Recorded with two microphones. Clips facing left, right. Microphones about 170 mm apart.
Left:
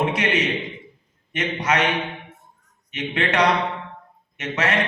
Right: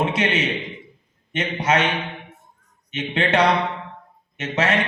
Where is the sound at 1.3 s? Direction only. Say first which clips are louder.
Right 2 dB; 25° right (ahead or behind).